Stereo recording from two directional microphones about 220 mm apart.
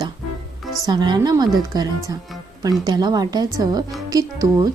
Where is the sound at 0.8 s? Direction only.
20° right (ahead or behind).